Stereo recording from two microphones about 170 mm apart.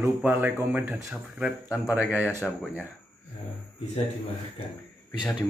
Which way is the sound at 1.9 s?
10° left (ahead or behind).